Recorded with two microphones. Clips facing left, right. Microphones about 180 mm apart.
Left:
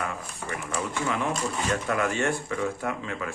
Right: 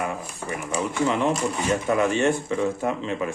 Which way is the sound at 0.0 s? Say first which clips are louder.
Right 4 dB; 20° right (ahead or behind).